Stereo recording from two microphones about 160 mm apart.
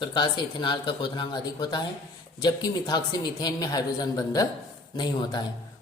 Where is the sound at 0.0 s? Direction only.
30° left (ahead or behind).